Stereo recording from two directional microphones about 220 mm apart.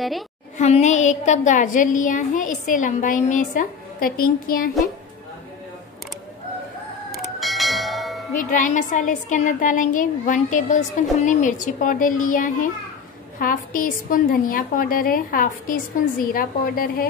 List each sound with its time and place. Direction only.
0.6 s a woman's voice: 30° left (ahead or behind)
7.1 s music: centre (ahead or behind)
8.4 s a woman's voice: 35° left (ahead or behind)